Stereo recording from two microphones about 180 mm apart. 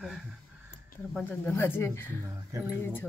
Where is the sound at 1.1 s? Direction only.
10° left (ahead or behind).